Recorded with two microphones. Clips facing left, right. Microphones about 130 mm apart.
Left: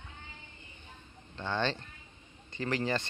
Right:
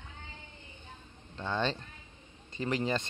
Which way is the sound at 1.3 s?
5° right (ahead or behind).